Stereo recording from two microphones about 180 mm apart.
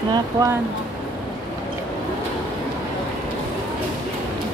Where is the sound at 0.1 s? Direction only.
15° right (ahead or behind).